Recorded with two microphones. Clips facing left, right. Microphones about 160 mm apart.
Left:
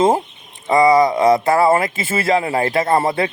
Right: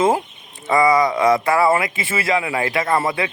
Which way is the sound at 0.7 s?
25° left (ahead or behind).